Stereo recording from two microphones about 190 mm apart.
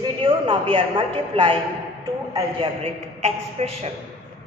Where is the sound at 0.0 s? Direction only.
25° right (ahead or behind).